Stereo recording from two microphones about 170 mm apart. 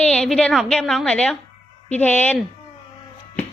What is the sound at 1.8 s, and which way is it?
Speech, 10° left (ahead or behind).